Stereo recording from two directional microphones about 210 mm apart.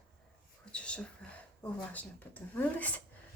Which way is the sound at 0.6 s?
5° left (ahead or behind).